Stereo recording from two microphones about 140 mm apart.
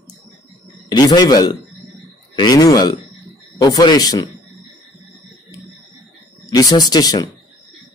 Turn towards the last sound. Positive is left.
turn(degrees=30)  # may be behind; listen again after turning